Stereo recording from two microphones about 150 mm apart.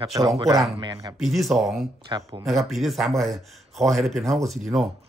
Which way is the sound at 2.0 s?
30° right (ahead or behind).